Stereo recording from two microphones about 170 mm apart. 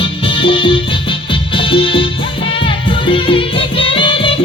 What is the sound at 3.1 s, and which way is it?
Music, 30° left (ahead or behind).